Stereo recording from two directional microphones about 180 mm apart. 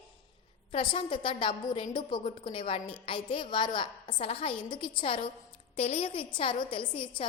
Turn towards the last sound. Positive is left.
turn(degrees=30)  # may be behind; listen again after turning